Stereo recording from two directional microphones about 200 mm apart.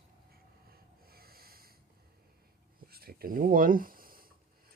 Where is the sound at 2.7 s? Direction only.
50° right (ahead or behind).